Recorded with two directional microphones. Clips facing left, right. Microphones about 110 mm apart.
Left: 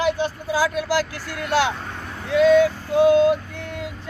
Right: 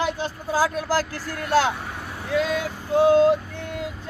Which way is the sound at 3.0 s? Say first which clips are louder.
Left 1 dB; 35° right (ahead or behind).